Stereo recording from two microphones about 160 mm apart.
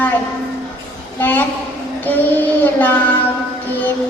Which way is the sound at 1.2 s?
10° left (ahead or behind).